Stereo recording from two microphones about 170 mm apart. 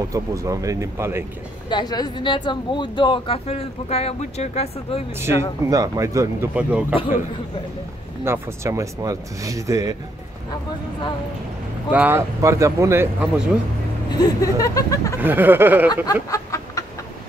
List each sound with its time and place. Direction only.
0.1 s speech: 20° right (ahead or behind)
1.7 s speech: 25° left (ahead or behind)
5.2 s speech: 20° right (ahead or behind)
6.5 s speech: 5° right (ahead or behind)
8.2 s speech: 15° right (ahead or behind)
11.9 s speech: 10° right (ahead or behind)
14.1 s speech: 20° left (ahead or behind)
15.1 s speech: 10° right (ahead or behind)
16.1 s chicken: 20° left (ahead or behind)